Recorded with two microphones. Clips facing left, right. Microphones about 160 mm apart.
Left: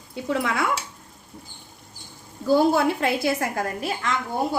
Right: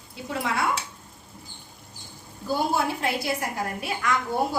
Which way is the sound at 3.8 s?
30° left (ahead or behind).